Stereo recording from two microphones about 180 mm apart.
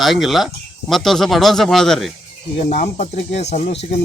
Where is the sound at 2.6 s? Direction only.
45° left (ahead or behind).